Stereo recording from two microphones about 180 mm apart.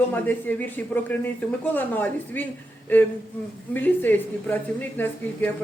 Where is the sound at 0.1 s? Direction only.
10° left (ahead or behind).